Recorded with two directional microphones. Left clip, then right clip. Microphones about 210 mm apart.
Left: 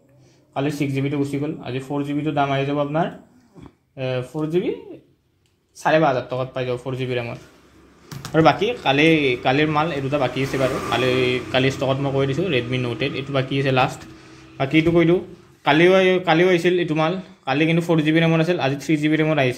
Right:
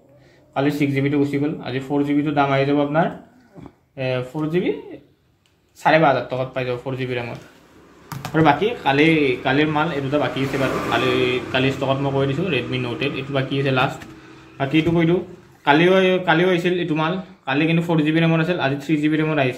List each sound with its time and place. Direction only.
0.9 s speech: 20° left (ahead or behind)
5.8 s a man's voice: 20° left (ahead or behind)